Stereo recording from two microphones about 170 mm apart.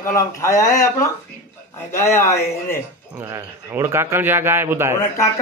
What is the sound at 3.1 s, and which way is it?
A man's voice, 15° right (ahead or behind).